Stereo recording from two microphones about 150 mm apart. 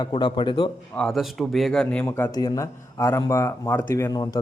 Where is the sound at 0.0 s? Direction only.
30° left (ahead or behind).